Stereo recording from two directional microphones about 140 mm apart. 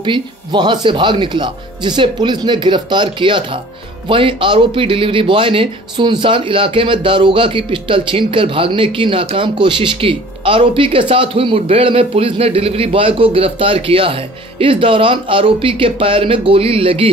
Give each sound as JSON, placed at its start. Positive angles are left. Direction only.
{"t": 0.0, "sound": "speech", "side_deg": -35}